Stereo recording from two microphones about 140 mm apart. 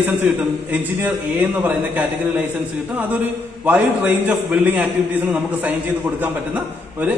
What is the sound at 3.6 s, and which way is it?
A man's voice, 10° right (ahead or behind).